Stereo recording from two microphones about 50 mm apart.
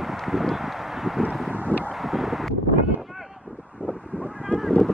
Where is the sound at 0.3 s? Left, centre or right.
Centre.